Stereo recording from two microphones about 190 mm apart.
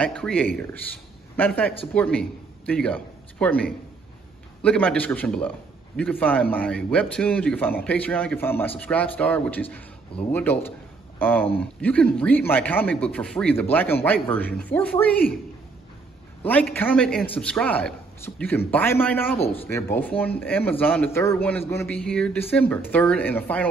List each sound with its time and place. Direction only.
0.0 s a man's voice: 5° left (ahead or behind)
4.6 s speech: 10° left (ahead or behind)
16.4 s speech: 10° left (ahead or behind)
19.3 s speech: 30° left (ahead or behind)
19.6 s speech: 10° left (ahead or behind)